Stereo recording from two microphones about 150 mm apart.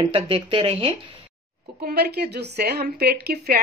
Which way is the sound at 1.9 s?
90° right.